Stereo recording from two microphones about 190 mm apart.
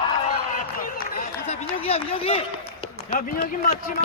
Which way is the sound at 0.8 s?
45° left (ahead or behind).